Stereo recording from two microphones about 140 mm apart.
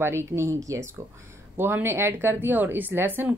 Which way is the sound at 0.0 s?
20° right (ahead or behind).